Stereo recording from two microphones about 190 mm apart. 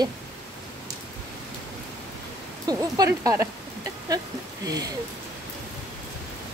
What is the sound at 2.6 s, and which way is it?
Speech, 20° right (ahead or behind).